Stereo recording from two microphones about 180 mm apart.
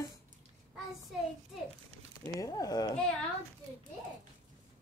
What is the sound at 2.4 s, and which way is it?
Speech, 20° left (ahead or behind).